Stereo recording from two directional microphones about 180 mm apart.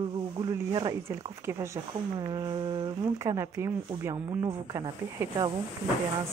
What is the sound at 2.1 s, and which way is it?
Speech, 25° right (ahead or behind).